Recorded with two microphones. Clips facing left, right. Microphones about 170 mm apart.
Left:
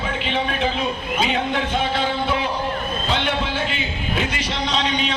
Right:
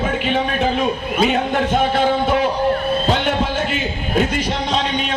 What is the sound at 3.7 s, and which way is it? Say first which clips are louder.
A man's voice: right 6 dB; 50° right (ahead or behind).